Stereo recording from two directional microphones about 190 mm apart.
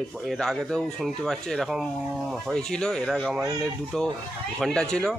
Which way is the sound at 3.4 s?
20° right (ahead or behind).